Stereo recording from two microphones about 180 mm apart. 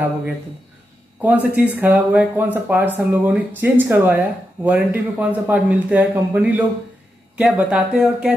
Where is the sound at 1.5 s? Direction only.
10° right (ahead or behind).